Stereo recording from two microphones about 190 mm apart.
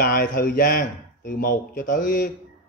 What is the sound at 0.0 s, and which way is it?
A man's voice, 50° left (ahead or behind).